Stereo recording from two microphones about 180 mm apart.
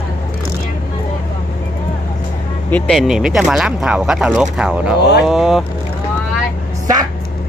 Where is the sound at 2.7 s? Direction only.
5° left (ahead or behind).